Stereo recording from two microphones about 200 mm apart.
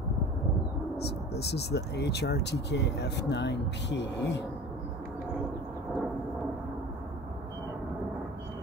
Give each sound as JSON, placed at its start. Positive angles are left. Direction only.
{"t": 0.9, "sound": "speech", "side_deg": 55}